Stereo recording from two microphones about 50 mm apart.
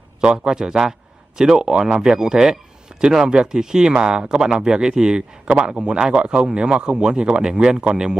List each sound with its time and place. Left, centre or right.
0.2 s speech: right